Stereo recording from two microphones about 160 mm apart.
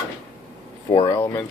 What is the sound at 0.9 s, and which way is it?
Speech, 30° left (ahead or behind).